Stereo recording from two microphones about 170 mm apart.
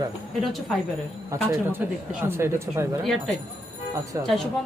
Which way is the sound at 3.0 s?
Centre (ahead or behind).